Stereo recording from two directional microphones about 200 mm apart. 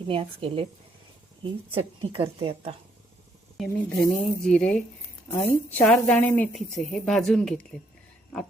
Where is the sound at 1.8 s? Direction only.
25° right (ahead or behind).